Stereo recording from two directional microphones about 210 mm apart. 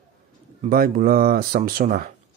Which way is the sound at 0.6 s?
45° right (ahead or behind).